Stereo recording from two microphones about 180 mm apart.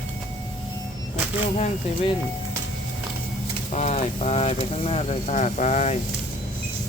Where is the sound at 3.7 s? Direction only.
40° left (ahead or behind).